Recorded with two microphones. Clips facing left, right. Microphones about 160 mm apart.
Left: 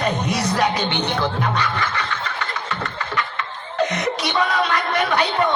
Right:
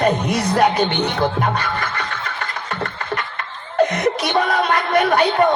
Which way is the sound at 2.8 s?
50° right (ahead or behind).